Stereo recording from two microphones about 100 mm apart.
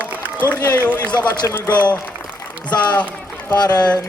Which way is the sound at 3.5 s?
40° left (ahead or behind).